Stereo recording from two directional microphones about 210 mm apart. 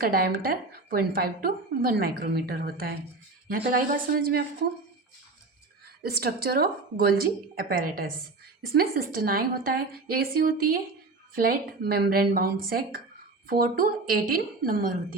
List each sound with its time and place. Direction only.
0.0 s a woman's voice: 45° right (ahead or behind)
6.1 s a woman's voice: 50° right (ahead or behind)